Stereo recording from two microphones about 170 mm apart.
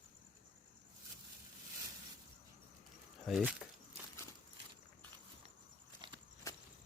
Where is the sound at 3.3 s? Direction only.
Centre (ahead or behind).